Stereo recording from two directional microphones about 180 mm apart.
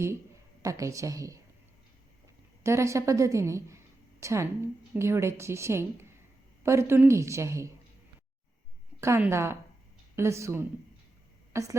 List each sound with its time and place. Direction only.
0.6 s a woman's voice: 20° right (ahead or behind)
2.6 s a woman's voice: 15° right (ahead or behind)
9.0 s a woman's voice: 15° right (ahead or behind)